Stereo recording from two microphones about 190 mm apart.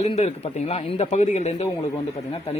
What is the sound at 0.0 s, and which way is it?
Speech, 35° left (ahead or behind).